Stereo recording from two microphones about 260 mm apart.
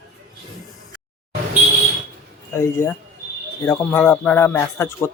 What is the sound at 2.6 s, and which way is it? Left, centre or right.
Speech, centre.